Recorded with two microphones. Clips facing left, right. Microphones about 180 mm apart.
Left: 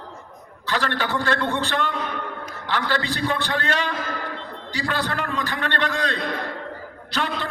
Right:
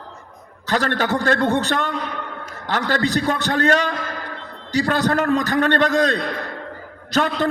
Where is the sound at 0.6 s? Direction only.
45° right (ahead or behind).